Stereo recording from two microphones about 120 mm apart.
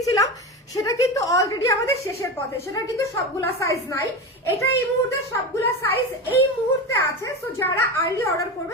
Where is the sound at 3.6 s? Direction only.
25° left (ahead or behind).